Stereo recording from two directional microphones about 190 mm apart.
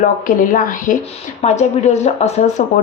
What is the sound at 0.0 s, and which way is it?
A woman's voice, 45° left (ahead or behind).